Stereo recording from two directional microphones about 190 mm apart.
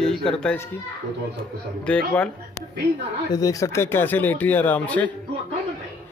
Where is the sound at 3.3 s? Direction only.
20° left (ahead or behind).